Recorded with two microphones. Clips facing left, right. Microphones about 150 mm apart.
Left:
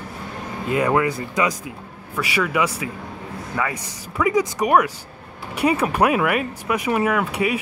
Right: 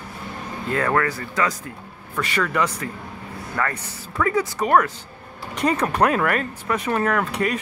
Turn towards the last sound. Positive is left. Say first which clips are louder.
# left 1 dB
turn(degrees=10)  # may be behind; listen again after turning